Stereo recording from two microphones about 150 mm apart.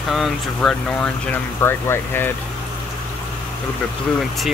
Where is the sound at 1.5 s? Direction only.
15° left (ahead or behind).